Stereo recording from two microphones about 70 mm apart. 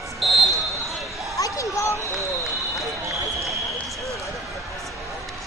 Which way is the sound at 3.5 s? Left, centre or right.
Centre.